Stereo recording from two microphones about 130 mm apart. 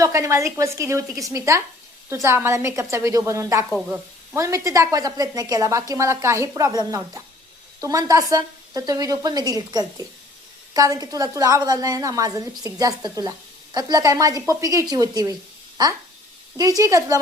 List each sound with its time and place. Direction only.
0.0 s a woman's voice: 25° right (ahead or behind)
16.6 s a woman's voice: 30° right (ahead or behind)